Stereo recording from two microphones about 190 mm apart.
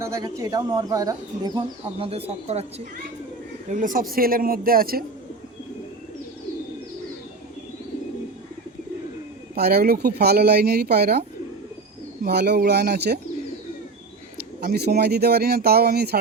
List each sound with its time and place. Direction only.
0.0 s speech: 15° right (ahead or behind); by 5.0 s 50° right (ahead or behind)
9.6 s speech: 55° right (ahead or behind)
14.6 s speech: 55° right (ahead or behind)